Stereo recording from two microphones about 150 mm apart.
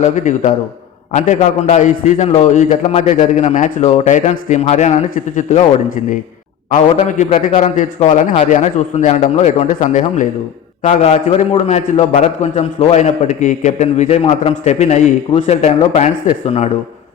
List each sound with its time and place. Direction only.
0.0 s a man's voice: 55° left (ahead or behind)
5.1 s speech: 55° left (ahead or behind)
6.7 s a man's voice: 55° left (ahead or behind)